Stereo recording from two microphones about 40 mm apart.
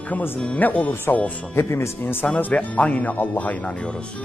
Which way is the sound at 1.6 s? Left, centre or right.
Left.